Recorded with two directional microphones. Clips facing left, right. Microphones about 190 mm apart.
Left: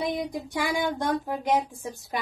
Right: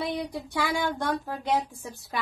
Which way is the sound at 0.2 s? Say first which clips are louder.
Left 1 dB; 15° left (ahead or behind).